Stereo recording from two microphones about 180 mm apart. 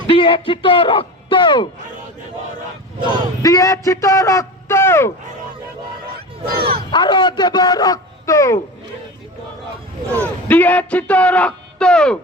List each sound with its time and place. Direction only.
0.1 s speech: 30° left (ahead or behind)
3.1 s a man's voice: 20° left (ahead or behind)
6.4 s speech: 55° right (ahead or behind)
6.9 s a man's voice: 25° left (ahead or behind)
10.5 s a man's voice: 10° left (ahead or behind)